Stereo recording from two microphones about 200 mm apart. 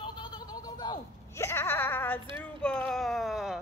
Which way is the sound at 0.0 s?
25° left (ahead or behind).